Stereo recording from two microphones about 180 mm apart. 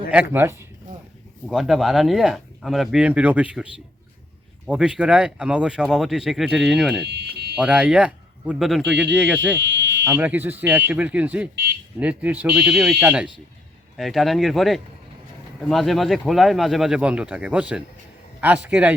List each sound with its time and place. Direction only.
0.1 s speech: 10° right (ahead or behind)
7.0 s fire alarm: 65° right (ahead or behind)
7.5 s speech: 5° right (ahead or behind)